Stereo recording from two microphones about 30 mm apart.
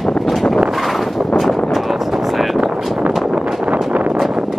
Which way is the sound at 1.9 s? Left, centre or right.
Centre.